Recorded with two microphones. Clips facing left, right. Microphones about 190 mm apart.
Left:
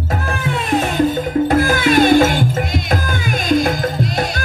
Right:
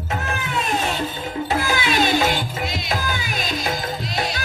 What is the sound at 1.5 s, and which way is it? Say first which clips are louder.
Music: left 5 dB; 50° left (ahead or behind).